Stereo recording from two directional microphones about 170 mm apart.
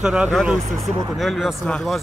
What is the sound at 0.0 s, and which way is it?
Speech, 5° right (ahead or behind).